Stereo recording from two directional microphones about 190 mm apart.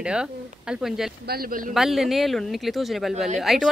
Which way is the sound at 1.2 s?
55° right (ahead or behind).